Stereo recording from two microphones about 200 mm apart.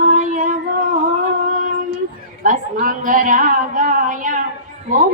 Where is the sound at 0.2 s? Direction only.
40° right (ahead or behind).